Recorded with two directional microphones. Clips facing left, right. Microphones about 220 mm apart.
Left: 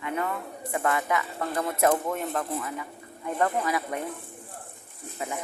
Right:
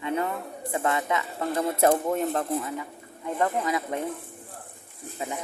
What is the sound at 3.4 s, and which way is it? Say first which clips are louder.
Speech: even; 20° right (ahead or behind).